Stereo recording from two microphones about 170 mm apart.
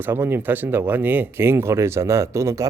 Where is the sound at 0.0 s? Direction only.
10° right (ahead or behind).